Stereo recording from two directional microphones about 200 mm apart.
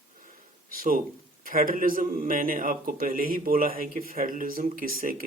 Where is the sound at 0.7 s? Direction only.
45° right (ahead or behind).